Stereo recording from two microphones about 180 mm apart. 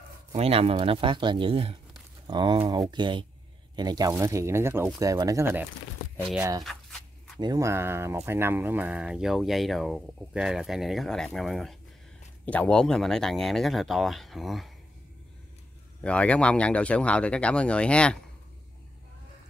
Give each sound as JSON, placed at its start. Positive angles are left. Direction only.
{"t": 0.4, "sound": "speech", "side_deg": -35}
{"t": 6.6, "sound": "a sound", "side_deg": 0}
{"t": 7.3, "sound": "speech", "side_deg": -20}
{"t": 16.0, "sound": "speech", "side_deg": 5}